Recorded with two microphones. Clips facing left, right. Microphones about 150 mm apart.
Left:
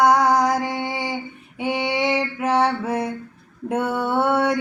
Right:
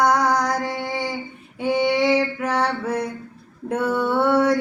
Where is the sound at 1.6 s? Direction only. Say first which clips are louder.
Right 3 dB; 20° left (ahead or behind).